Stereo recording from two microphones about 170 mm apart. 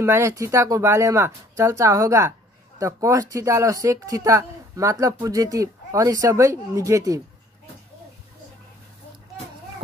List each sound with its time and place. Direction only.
0.0 s speech: 15° right (ahead or behind)